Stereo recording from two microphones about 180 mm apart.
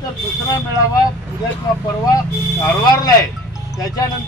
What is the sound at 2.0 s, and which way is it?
A man's voice, 20° left (ahead or behind).